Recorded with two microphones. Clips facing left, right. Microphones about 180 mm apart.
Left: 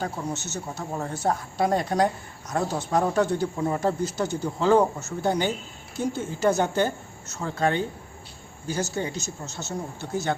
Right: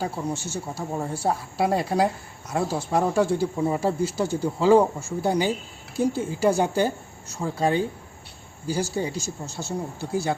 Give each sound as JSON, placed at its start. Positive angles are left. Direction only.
{"t": 0.0, "sound": "a woman's voice", "side_deg": -10}